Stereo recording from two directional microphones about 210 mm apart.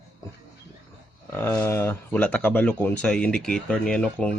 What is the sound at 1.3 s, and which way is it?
Speech, 10° left (ahead or behind).